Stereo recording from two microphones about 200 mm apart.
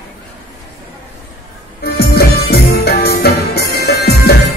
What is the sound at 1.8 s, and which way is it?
Music, 50° left (ahead or behind).